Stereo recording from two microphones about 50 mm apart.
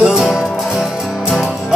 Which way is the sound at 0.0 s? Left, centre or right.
Centre.